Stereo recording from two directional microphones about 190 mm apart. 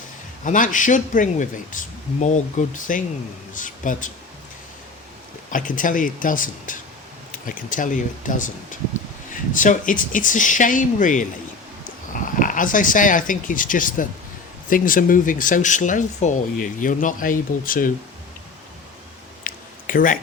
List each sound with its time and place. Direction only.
0.4 s speech: 45° left (ahead or behind)
5.5 s speech: 45° left (ahead or behind)
19.5 s a sound: 45° left (ahead or behind)